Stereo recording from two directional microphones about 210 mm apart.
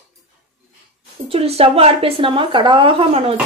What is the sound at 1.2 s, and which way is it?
A woman's voice, 30° right (ahead or behind).